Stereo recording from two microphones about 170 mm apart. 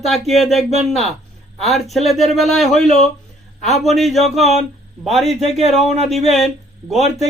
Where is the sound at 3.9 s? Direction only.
Centre (ahead or behind).